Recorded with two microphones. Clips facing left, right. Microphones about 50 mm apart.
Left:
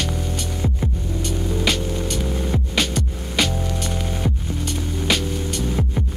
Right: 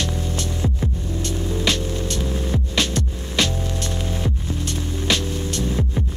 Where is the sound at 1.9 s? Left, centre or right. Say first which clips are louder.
Left 1 dB; centre.